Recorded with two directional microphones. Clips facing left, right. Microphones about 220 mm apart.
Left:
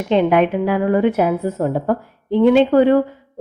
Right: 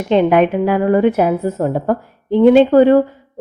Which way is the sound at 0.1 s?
45° right (ahead or behind).